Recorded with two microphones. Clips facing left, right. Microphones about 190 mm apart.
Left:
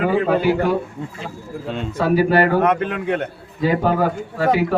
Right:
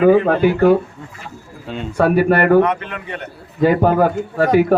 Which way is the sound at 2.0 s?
60° right (ahead or behind).